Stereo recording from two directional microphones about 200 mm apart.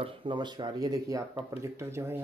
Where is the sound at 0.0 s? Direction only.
25° right (ahead or behind).